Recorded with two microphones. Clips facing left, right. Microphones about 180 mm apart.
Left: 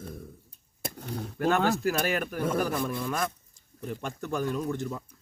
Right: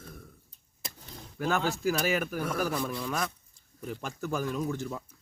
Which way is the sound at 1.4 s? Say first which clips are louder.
Left 4 dB; centre (ahead or behind).